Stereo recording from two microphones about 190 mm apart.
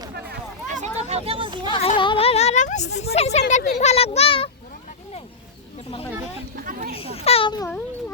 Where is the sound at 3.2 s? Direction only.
35° left (ahead or behind).